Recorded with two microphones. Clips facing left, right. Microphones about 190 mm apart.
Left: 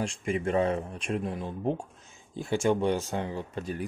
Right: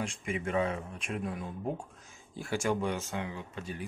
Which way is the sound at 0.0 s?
30° left (ahead or behind).